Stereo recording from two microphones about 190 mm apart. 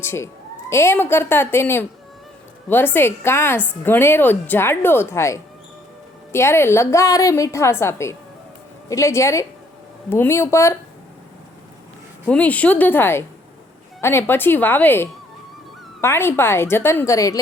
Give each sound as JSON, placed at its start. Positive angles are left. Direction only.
{"t": 0.0, "sound": "a woman's voice", "side_deg": 15}
{"t": 12.2, "sound": "a woman's voice", "side_deg": 5}